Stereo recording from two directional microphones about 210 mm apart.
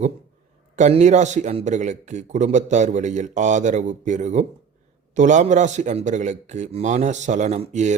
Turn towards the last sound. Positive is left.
turn(degrees=-35)  # may be behind; listen again after turning